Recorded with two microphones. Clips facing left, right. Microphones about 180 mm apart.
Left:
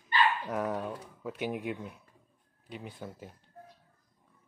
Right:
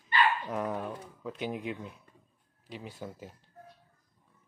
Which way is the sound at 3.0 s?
5° right (ahead or behind).